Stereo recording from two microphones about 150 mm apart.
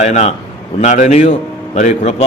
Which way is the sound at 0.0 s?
50° left (ahead or behind).